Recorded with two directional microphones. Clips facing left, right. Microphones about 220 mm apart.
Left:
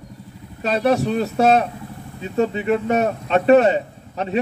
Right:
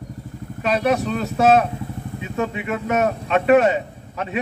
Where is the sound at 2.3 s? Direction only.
35° left (ahead or behind).